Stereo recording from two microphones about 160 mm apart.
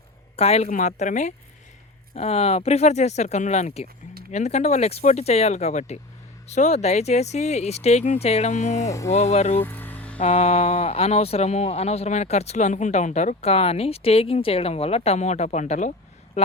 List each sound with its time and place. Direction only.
0.3 s speech: 40° left (ahead or behind)
9.6 s music: 10° left (ahead or behind)
10.2 s speech: 40° left (ahead or behind)